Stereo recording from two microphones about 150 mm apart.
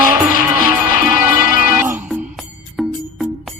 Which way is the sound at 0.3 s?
70° left (ahead or behind).